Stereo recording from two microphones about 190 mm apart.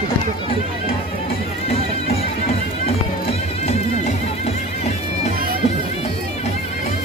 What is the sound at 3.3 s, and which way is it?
Music, 35° left (ahead or behind).